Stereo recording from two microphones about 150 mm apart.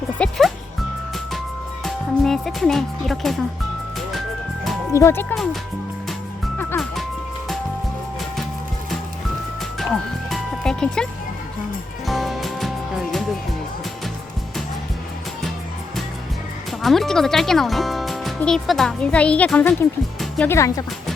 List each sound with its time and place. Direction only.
0.2 s music: centre (ahead or behind)
1.8 s speech: centre (ahead or behind)
4.9 s speech: 20° left (ahead or behind)
9.7 s music: centre (ahead or behind)
16.8 s speech: centre (ahead or behind)
20.5 s speech: 20° left (ahead or behind)